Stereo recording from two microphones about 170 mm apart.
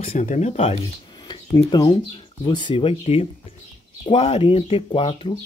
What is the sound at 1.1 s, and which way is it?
Speech, 25° left (ahead or behind).